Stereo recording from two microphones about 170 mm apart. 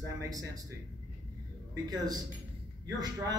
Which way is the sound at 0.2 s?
20° right (ahead or behind).